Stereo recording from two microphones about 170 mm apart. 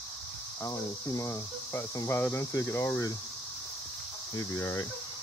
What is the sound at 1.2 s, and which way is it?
Speech, 15° left (ahead or behind).